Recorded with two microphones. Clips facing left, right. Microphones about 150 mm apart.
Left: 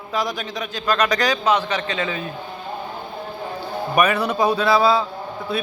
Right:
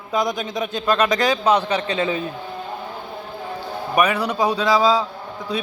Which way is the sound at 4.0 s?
10° right (ahead or behind).